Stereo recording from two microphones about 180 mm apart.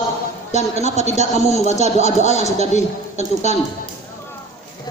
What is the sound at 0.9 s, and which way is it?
Speech, 40° left (ahead or behind).